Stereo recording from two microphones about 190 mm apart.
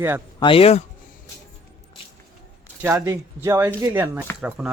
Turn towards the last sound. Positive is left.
turn(degrees=-10)  # may be behind; listen again after turning